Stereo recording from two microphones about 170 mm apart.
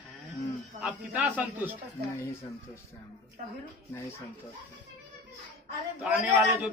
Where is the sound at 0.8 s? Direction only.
5° right (ahead or behind).